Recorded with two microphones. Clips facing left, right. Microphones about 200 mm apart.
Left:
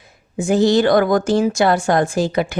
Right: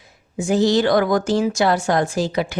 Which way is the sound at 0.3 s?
55° left (ahead or behind).